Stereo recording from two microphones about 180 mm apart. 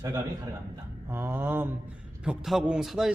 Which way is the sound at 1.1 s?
10° right (ahead or behind).